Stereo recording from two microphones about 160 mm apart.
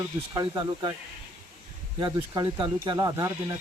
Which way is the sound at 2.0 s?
25° right (ahead or behind).